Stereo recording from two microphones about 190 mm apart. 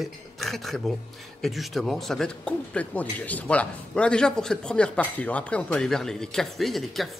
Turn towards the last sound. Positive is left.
turn(degrees=0)  # may be behind; listen again after turning